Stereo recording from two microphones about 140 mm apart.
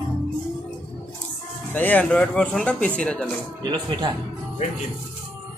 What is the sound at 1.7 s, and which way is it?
Speech, 10° left (ahead or behind).